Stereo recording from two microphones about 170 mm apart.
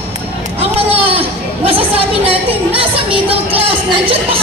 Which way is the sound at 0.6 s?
35° right (ahead or behind).